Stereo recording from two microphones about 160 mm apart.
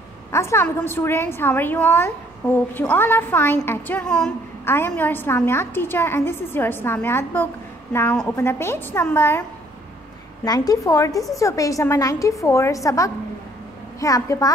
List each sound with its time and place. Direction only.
0.3 s a woman's voice: 15° left (ahead or behind)
10.4 s a woman's voice: 25° left (ahead or behind)